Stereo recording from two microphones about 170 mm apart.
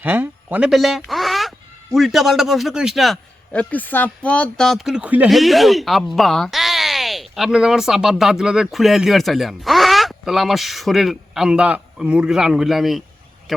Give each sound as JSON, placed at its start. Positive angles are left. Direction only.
{"t": 0.0, "sound": "speech", "side_deg": -10}